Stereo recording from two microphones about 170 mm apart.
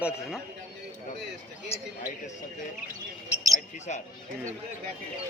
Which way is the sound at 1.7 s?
15° left (ahead or behind).